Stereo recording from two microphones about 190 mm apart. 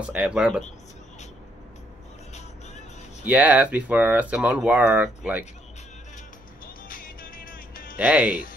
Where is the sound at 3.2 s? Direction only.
10° right (ahead or behind).